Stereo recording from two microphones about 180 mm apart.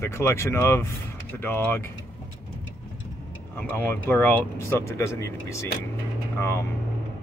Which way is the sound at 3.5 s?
10° left (ahead or behind).